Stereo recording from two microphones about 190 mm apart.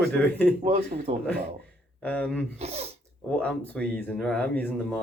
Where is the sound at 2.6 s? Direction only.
35° right (ahead or behind).